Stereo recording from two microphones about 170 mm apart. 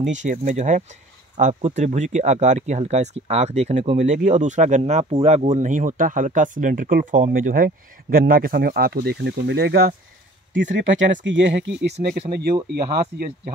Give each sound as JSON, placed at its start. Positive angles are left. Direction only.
{"t": 0.1, "sound": "speech", "side_deg": -45}
{"t": 10.5, "sound": "speech", "side_deg": -90}